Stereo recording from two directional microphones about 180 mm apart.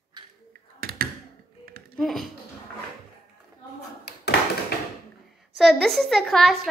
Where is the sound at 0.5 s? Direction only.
55° right (ahead or behind).